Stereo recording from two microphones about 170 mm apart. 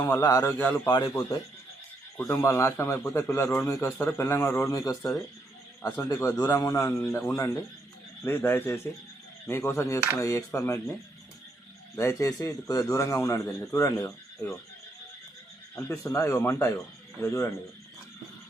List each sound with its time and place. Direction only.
0.0 s a man's voice: 20° left (ahead or behind)
11.9 s a man's voice: 15° left (ahead or behind)
15.7 s a man's voice: 15° left (ahead or behind)